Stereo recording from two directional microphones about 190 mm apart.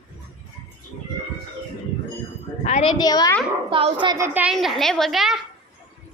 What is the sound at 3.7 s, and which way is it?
Speech, 25° right (ahead or behind).